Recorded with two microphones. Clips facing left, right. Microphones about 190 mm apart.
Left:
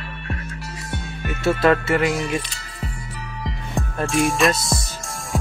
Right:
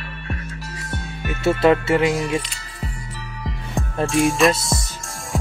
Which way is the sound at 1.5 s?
25° right (ahead or behind).